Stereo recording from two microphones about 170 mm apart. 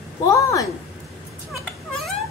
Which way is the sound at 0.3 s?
20° left (ahead or behind).